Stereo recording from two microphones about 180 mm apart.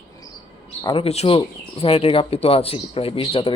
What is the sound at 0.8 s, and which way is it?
A man's voice, 25° left (ahead or behind).